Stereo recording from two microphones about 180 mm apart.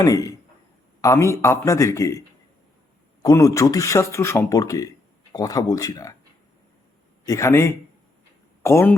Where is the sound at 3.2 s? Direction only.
15° left (ahead or behind).